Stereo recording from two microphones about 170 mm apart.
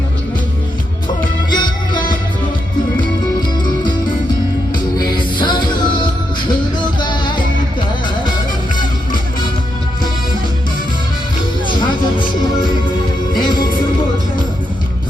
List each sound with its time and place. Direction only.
1.5 s music: 25° left (ahead or behind)
4.9 s music: 25° left (ahead or behind)